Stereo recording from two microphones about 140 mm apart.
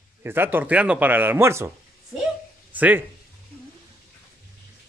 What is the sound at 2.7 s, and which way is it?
Speech, 10° right (ahead or behind).